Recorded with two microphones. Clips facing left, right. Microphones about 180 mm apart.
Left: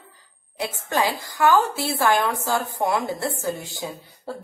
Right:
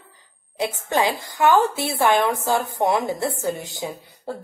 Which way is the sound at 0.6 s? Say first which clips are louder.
Right 2 dB; 20° right (ahead or behind).